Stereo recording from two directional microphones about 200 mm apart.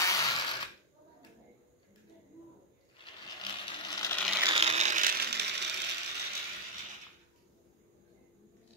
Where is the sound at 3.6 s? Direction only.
20° left (ahead or behind).